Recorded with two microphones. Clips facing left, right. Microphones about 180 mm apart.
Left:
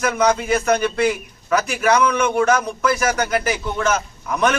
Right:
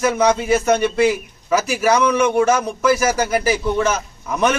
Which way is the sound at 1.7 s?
30° right (ahead or behind).